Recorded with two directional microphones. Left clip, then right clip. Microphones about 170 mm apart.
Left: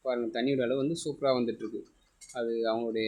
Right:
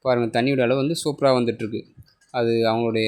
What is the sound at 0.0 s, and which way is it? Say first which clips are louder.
Speech: right 10 dB; 40° right (ahead or behind).